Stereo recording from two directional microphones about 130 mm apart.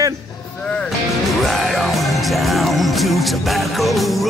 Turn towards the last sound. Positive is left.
turn(degrees=0)  # may be behind; listen again after turning